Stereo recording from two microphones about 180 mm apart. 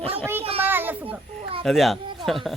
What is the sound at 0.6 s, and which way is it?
Speech, 10° right (ahead or behind).